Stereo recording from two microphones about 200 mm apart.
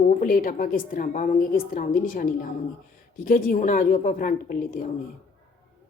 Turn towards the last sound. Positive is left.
turn(degrees=45)  # may be behind; listen again after turning